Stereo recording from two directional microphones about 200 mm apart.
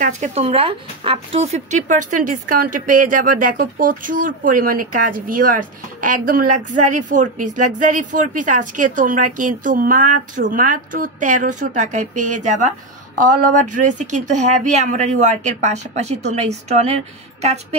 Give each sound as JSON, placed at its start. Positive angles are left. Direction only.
{"t": 0.0, "sound": "a woman's voice", "side_deg": -35}